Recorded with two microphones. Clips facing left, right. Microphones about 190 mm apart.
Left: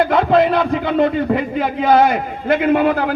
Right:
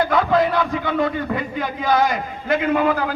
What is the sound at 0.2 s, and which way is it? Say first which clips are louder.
A man's voice: left 4 dB; 60° left (ahead or behind).